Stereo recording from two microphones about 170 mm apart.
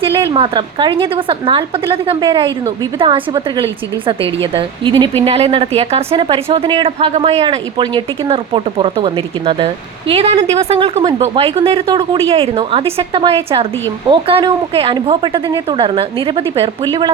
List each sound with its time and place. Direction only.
0.1 s a woman's voice: 15° right (ahead or behind)
0.3 s a woman's voice: 30° right (ahead or behind)